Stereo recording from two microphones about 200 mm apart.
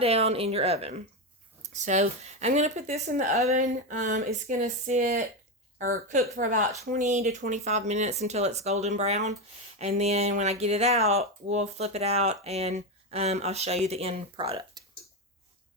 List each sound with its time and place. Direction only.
0.0 s a woman's voice: 30° right (ahead or behind)